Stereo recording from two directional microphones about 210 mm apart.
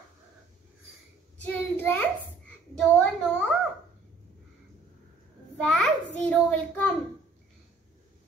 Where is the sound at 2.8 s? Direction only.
Centre (ahead or behind).